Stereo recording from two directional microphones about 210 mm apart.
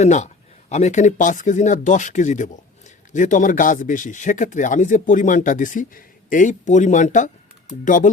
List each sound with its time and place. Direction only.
0.0 s speech: 35° left (ahead or behind)